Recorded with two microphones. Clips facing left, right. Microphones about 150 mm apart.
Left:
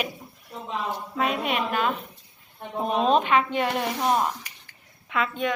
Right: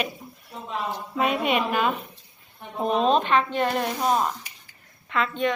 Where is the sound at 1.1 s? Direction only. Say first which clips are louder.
Right 3 dB; centre (ahead or behind).